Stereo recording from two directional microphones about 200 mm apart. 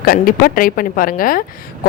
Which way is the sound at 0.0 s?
45° left (ahead or behind).